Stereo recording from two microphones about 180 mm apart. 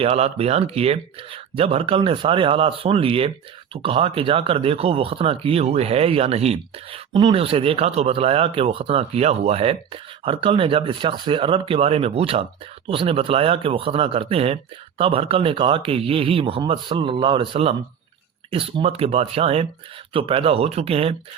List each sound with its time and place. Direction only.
0.0 s speech: 35° right (ahead or behind)